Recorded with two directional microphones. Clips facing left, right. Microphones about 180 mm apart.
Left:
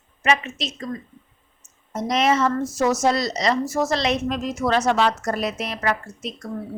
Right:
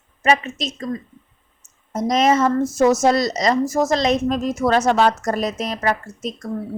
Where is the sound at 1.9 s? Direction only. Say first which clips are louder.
Right 3 dB; 45° right (ahead or behind).